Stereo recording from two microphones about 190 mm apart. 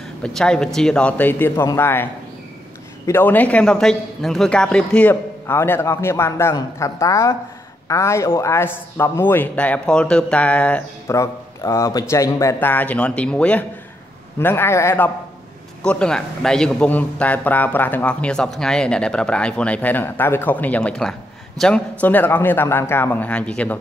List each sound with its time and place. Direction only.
0.0 s a man's voice: 5° left (ahead or behind)
3.1 s a man's voice: 10° left (ahead or behind)